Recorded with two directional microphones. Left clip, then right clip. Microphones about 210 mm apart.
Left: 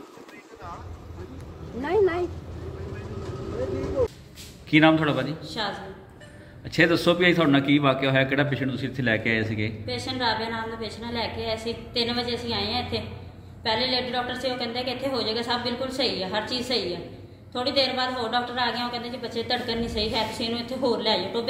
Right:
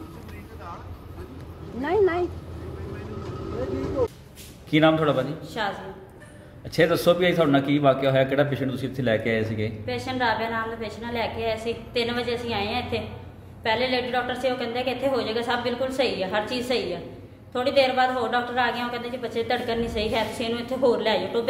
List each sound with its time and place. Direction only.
1.8 s a sound: 40° right (ahead or behind)
4.6 s a man's voice: 10° right (ahead or behind)
5.4 s a woman's voice: 5° left (ahead or behind)
6.7 s a man's voice: 10° right (ahead or behind)
9.8 s a woman's voice: 10° left (ahead or behind)